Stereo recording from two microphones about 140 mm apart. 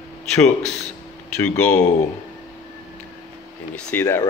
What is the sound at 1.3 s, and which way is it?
Speech, 10° left (ahead or behind).